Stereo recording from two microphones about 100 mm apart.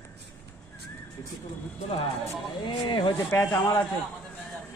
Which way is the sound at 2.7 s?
55° left (ahead or behind).